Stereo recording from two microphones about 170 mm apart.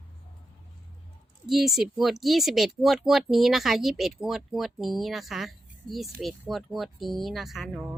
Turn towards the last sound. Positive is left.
turn(degrees=-5)  # may be behind; listen again after turning